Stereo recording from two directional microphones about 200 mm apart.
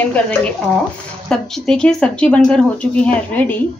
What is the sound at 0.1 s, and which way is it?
A woman's voice, 5° left (ahead or behind).